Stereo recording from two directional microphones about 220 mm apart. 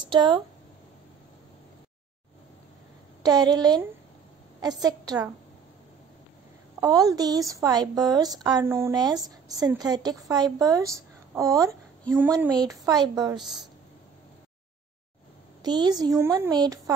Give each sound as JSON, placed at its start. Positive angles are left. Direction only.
{"t": 0.0, "sound": "speech", "side_deg": -20}
{"t": 3.2, "sound": "a woman's voice", "side_deg": -15}
{"t": 4.8, "sound": "a woman's voice", "side_deg": -15}
{"t": 6.8, "sound": "a woman's voice", "side_deg": -15}
{"t": 15.6, "sound": "a woman's voice", "side_deg": -20}